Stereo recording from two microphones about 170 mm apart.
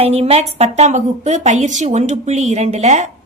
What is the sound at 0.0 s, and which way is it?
A woman's voice, 35° right (ahead or behind).